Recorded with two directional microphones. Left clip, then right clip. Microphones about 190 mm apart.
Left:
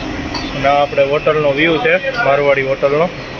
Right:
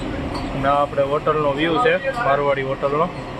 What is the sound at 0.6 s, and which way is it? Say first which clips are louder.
Speech: left 6 dB; 5° left (ahead or behind).